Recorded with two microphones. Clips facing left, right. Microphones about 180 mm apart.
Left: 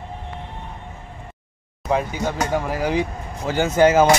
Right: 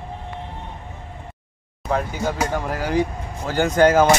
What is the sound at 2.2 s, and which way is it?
Speech, 5° right (ahead or behind).